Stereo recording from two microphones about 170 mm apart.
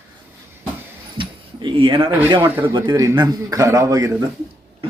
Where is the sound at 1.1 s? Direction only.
30° right (ahead or behind).